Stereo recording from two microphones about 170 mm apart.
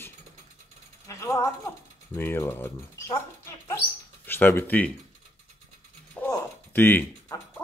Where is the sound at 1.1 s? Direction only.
20° left (ahead or behind).